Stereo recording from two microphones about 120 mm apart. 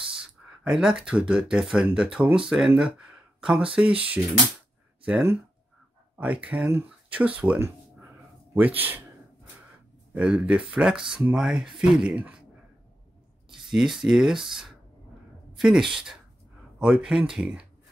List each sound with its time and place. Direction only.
0.7 s speech: 5° right (ahead or behind)
6.1 s speech: 10° right (ahead or behind)
10.1 s speech: 10° right (ahead or behind)
13.5 s speech: 5° right (ahead or behind)